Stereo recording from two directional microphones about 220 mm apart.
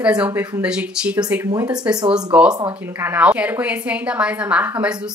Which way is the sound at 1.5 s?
15° right (ahead or behind).